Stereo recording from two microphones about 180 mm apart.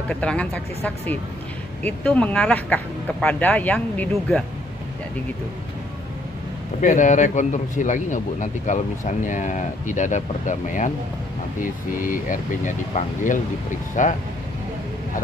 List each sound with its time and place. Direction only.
0.1 s speech: 5° left (ahead or behind)
6.8 s a man's voice: 45° left (ahead or behind)